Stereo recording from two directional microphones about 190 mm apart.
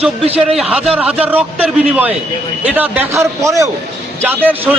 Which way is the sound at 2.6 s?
5° right (ahead or behind).